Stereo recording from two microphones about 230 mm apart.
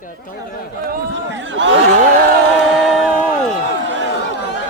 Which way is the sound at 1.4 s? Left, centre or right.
Right.